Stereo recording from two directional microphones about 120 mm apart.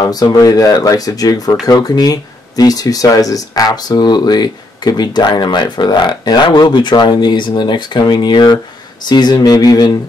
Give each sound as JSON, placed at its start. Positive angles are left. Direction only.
{"t": 0.0, "sound": "speech", "side_deg": 30}